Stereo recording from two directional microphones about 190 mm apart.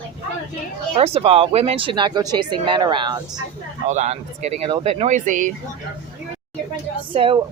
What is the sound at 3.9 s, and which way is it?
Speech, 35° right (ahead or behind).